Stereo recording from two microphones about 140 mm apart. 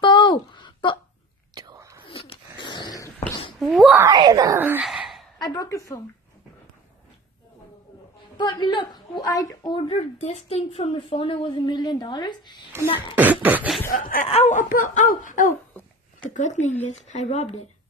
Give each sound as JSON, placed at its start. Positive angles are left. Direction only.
{"t": 0.0, "sound": "a sound", "side_deg": 35}
{"t": 1.5, "sound": "whispering", "side_deg": -30}
{"t": 2.0, "sound": "a sound", "side_deg": 40}
{"t": 3.5, "sound": "speech", "side_deg": 0}
{"t": 4.1, "sound": "speech", "side_deg": -30}
{"t": 4.8, "sound": "a sound", "side_deg": 0}
{"t": 5.4, "sound": "a woman's voice", "side_deg": 25}
{"t": 8.4, "sound": "a woman's voice", "side_deg": 30}
{"t": 9.9, "sound": "a woman's voice", "side_deg": 50}
{"t": 13.1, "sound": "beatboxing", "side_deg": -10}
{"t": 13.8, "sound": "speech", "side_deg": 85}
{"t": 14.3, "sound": "speech", "side_deg": 55}
{"t": 16.3, "sound": "speech", "side_deg": 60}